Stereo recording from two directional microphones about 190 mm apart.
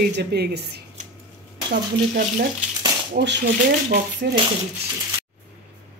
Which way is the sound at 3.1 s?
65° right (ahead or behind).